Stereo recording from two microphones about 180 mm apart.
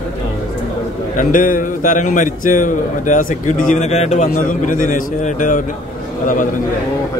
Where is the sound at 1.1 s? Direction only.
50° left (ahead or behind).